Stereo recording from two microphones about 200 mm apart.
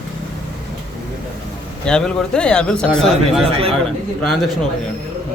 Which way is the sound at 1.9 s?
5° left (ahead or behind).